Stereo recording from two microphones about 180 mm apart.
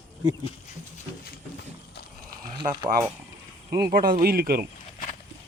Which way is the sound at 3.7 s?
60° right (ahead or behind).